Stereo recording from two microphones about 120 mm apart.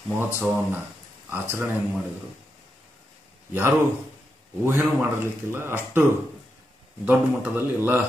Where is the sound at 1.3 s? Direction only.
20° right (ahead or behind).